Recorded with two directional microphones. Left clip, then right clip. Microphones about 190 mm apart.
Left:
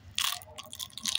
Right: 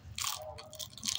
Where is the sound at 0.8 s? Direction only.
30° left (ahead or behind).